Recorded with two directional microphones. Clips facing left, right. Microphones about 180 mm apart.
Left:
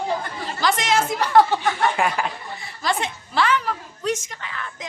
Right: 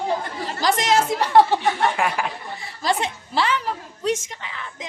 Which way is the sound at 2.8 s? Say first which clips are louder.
Right 2 dB; 35° right (ahead or behind).